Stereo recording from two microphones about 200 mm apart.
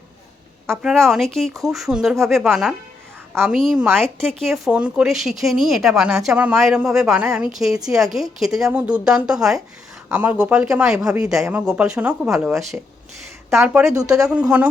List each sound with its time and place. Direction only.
0.7 s a woman's voice: centre (ahead or behind)